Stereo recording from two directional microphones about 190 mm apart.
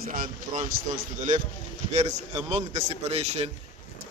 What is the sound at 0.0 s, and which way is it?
Speech, 45° right (ahead or behind).